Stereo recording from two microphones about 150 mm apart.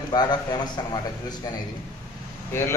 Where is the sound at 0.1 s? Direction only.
30° left (ahead or behind).